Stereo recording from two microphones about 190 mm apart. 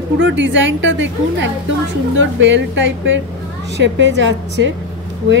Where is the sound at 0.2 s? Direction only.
70° right (ahead or behind).